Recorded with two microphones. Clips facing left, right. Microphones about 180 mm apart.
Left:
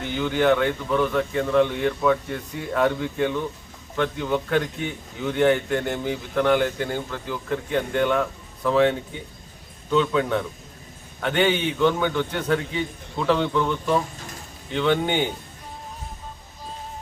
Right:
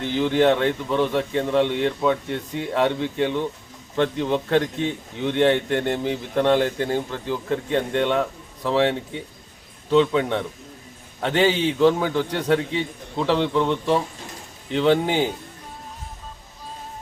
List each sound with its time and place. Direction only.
0.0 s a man's voice: 30° right (ahead or behind)